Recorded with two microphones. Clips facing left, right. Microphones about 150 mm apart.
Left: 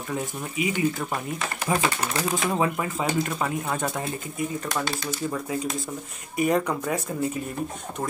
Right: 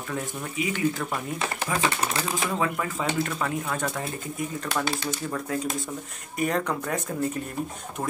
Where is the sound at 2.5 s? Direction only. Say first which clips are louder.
Left 2 dB; 25° left (ahead or behind).